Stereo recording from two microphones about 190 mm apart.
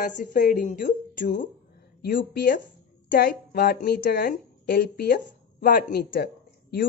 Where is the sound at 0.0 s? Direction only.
45° left (ahead or behind).